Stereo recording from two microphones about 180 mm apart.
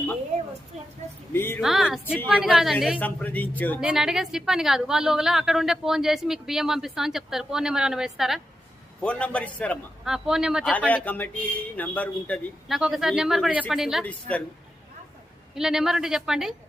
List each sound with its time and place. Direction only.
0.3 s a sound: 35° right (ahead or behind)
1.3 s a man's voice: 10° left (ahead or behind)
1.6 s a woman's voice: centre (ahead or behind)
3.0 s a man's voice: 10° left (ahead or behind)
3.8 s a woman's voice: 5° right (ahead or behind)
10.1 s a woman's voice: 5° right (ahead or behind)
10.7 s a woman's voice: 10° left (ahead or behind)
15.5 s a woman's voice: 5° right (ahead or behind)